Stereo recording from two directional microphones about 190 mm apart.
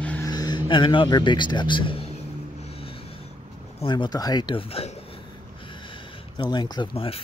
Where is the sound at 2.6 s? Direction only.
30° left (ahead or behind).